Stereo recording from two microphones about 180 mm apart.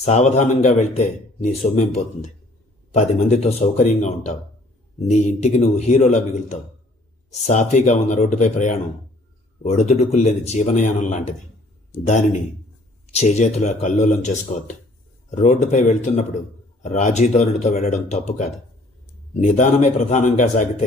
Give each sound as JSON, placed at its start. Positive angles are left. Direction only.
{"t": 0.0, "sound": "a man's voice", "side_deg": 40}